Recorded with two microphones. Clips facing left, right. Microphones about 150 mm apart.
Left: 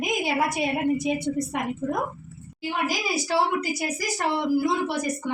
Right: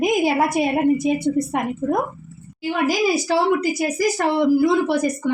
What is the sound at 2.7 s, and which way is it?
A woman's voice, 90° right.